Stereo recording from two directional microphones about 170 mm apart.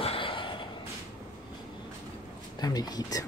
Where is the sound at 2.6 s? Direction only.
25° left (ahead or behind).